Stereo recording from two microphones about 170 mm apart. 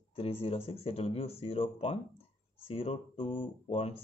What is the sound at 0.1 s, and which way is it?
Speech, 35° left (ahead or behind).